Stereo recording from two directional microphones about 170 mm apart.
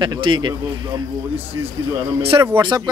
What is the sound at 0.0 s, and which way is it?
Speech, 25° right (ahead or behind).